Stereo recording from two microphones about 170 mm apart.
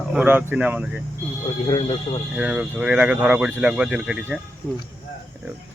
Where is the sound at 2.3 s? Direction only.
5° right (ahead or behind).